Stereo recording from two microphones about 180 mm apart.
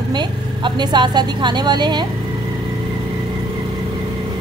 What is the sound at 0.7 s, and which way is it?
A woman's voice, 25° right (ahead or behind).